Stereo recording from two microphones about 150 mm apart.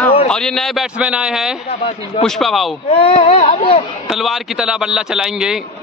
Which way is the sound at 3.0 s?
40° left (ahead or behind).